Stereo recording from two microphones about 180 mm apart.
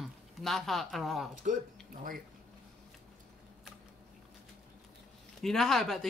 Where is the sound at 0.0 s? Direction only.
Centre (ahead or behind).